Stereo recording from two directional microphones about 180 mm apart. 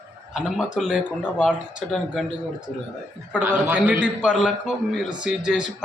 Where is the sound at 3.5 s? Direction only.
5° right (ahead or behind).